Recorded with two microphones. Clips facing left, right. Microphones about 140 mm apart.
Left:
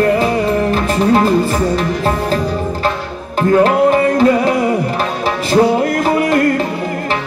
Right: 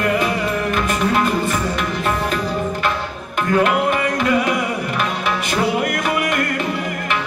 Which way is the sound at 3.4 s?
35° left (ahead or behind).